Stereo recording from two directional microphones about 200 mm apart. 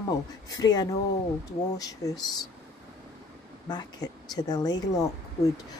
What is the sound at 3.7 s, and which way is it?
Speech, 20° left (ahead or behind).